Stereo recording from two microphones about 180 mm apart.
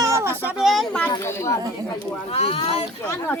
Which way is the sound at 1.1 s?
15° left (ahead or behind).